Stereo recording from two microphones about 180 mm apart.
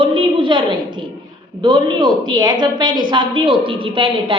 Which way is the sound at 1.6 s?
25° right (ahead or behind).